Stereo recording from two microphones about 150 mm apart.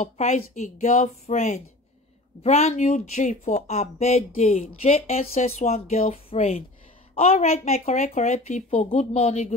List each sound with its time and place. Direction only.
0.0 s speech: 50° left (ahead or behind)